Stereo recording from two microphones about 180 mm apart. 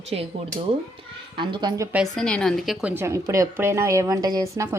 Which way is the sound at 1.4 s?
25° right (ahead or behind).